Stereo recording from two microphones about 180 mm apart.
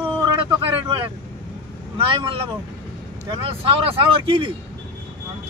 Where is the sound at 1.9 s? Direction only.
30° right (ahead or behind).